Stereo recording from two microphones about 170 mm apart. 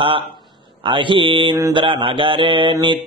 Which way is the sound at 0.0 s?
30° right (ahead or behind).